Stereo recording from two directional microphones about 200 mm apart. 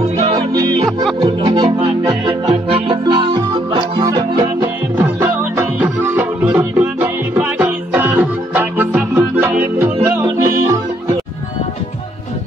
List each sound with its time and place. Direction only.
0.4 s music: 20° right (ahead or behind)
2.5 s music: 25° right (ahead or behind)
4.9 s music: 10° right (ahead or behind)